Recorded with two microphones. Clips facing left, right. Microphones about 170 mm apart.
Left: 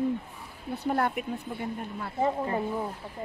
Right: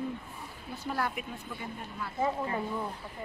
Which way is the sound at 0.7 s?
60° left (ahead or behind).